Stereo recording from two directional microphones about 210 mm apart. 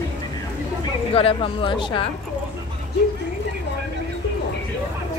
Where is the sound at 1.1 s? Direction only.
25° left (ahead or behind).